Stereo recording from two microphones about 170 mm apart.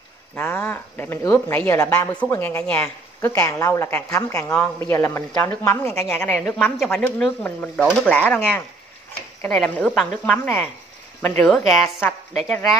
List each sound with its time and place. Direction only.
0.4 s a woman's voice: 15° left (ahead or behind)
3.2 s a woman's voice: 20° left (ahead or behind)
4.5 s a woman's voice: 5° left (ahead or behind)
8.1 s a woman's voice: 10° left (ahead or behind)